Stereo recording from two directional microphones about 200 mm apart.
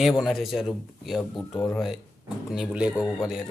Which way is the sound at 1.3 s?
10° left (ahead or behind).